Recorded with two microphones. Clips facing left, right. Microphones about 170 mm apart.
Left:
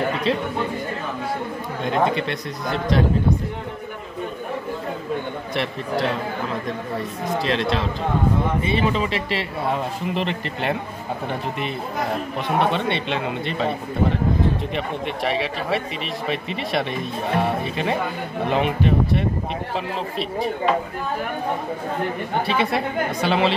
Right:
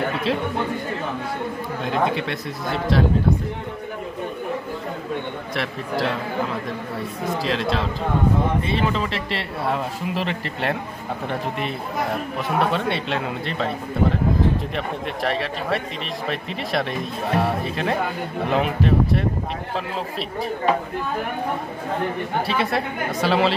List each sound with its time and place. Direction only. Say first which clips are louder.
1.9 s speech: left 2 dB; centre (ahead or behind)
7.0 s speech: right 1 dB; centre (ahead or behind)
12.4 s speech: left 1 dB; centre (ahead or behind)
14.8 s speech: left 1 dB; centre (ahead or behind)
22.5 s speech: left 3 dB; centre (ahead or behind)